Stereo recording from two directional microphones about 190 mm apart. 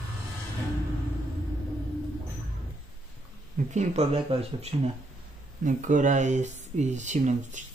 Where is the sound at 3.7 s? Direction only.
30° right (ahead or behind).